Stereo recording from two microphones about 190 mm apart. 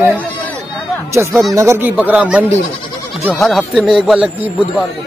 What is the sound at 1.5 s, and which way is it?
Speech, 15° right (ahead or behind).